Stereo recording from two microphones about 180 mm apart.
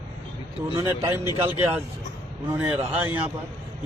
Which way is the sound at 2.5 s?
5° right (ahead or behind).